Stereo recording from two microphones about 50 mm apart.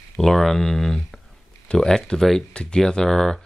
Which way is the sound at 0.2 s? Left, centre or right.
Centre.